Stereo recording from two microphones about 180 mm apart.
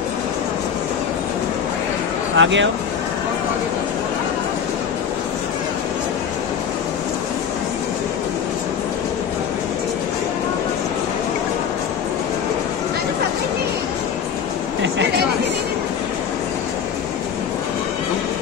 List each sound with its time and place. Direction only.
2.3 s speech: 90° right